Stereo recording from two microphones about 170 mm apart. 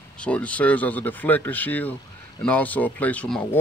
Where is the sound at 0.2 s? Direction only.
10° left (ahead or behind).